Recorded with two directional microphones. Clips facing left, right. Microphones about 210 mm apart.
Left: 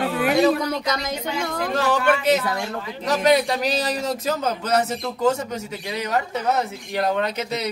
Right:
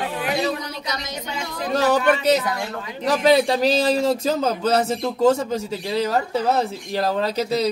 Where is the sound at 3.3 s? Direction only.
30° right (ahead or behind).